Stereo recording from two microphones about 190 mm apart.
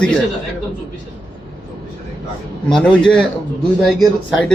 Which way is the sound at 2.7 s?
5° left (ahead or behind).